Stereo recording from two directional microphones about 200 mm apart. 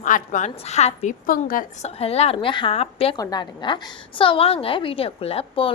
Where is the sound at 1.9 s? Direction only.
30° left (ahead or behind).